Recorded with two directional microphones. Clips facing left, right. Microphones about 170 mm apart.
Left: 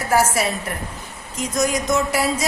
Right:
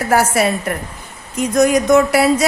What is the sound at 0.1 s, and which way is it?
A woman's voice, 65° right (ahead or behind).